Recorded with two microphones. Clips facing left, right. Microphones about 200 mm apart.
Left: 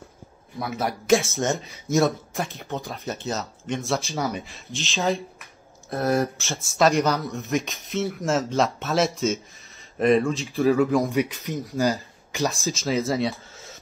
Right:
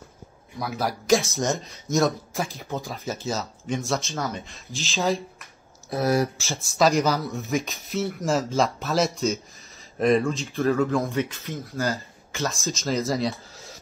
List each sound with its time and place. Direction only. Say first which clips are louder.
0.6 s speech: even; centre (ahead or behind)
4.1 s speech: left 3 dB; 15° left (ahead or behind)
4.5 s speech: left 1 dB; centre (ahead or behind)
10.8 s speech: left 3 dB; 15° left (ahead or behind)
12.6 s speech: right 2 dB; centre (ahead or behind)